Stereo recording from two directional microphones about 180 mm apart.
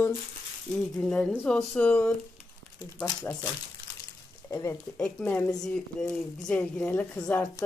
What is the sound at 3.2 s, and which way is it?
Speech, 10° left (ahead or behind).